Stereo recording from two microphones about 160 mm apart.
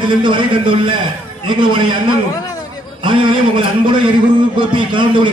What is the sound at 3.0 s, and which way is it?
A man's voice, 30° right (ahead or behind).